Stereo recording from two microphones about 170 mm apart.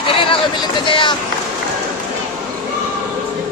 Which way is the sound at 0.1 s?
30° left (ahead or behind).